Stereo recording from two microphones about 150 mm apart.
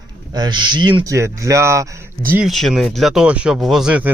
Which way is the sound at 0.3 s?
30° right (ahead or behind).